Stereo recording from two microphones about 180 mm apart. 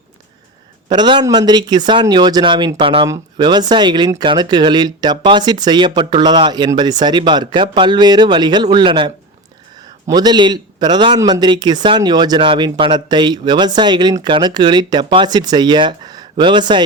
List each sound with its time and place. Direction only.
0.9 s a man's voice: 25° right (ahead or behind)